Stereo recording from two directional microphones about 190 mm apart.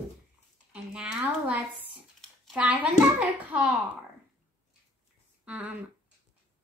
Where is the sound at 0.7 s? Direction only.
5° right (ahead or behind).